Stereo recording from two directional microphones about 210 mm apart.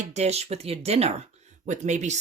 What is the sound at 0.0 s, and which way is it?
Speech, 35° right (ahead or behind).